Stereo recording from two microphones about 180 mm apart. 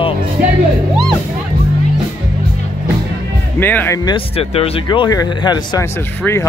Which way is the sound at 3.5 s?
10° left (ahead or behind).